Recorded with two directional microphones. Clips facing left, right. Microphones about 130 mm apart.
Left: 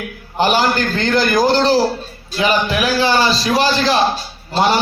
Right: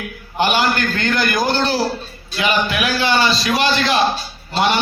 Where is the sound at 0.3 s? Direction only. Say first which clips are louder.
Left 2 dB; 35° left (ahead or behind).